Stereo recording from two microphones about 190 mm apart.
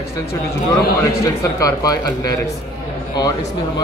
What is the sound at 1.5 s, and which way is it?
Speech, 20° left (ahead or behind).